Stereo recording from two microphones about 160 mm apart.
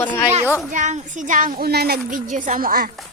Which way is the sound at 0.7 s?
50° right (ahead or behind).